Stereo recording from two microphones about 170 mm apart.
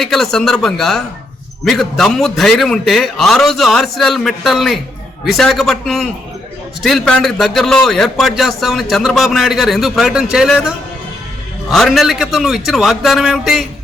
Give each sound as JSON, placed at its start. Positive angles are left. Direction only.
{"t": 0.0, "sound": "a man's voice", "side_deg": 5}
{"t": 11.7, "sound": "a man's voice", "side_deg": 0}